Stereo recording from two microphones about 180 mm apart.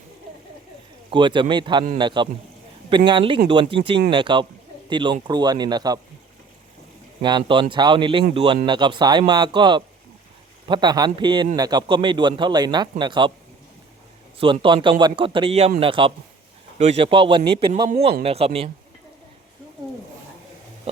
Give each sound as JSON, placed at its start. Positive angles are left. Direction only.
{"t": 1.1, "sound": "a man's voice", "side_deg": -25}
{"t": 7.2, "sound": "a man's voice", "side_deg": -25}
{"t": 14.3, "sound": "a man's voice", "side_deg": -30}
{"t": 20.9, "sound": "a sound", "side_deg": -35}